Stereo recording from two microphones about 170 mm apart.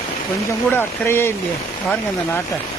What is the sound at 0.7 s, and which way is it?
Speech, 15° left (ahead or behind).